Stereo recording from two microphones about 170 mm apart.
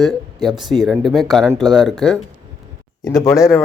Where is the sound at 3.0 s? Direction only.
20° left (ahead or behind).